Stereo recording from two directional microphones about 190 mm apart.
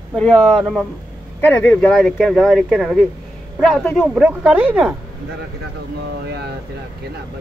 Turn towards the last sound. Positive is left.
turn(degrees=-60)  # may be behind; listen again after turning